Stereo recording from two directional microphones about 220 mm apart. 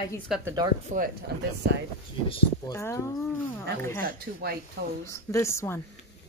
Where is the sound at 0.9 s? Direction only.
40° right (ahead or behind).